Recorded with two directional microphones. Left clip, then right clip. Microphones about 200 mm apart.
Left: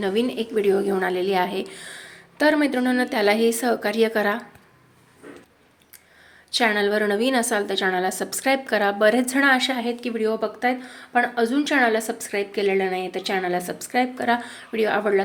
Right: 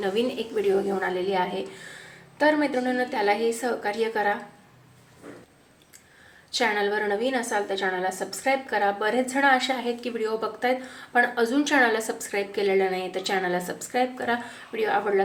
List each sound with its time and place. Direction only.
0.0 s a woman's voice: 30° left (ahead or behind); by 4.4 s 45° left (ahead or behind)
6.5 s a woman's voice: 35° left (ahead or behind)